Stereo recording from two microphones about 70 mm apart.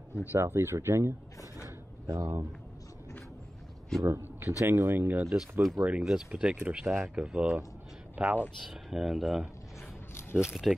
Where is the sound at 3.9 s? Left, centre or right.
Centre.